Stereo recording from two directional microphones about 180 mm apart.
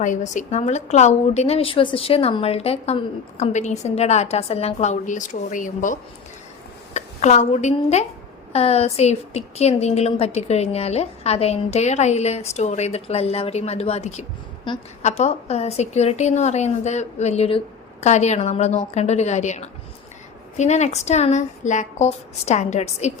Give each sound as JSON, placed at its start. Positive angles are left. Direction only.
{"t": 0.0, "sound": "a woman's voice", "side_deg": 45}
{"t": 14.7, "sound": "a woman's voice", "side_deg": 25}
{"t": 15.0, "sound": "a woman's voice", "side_deg": 40}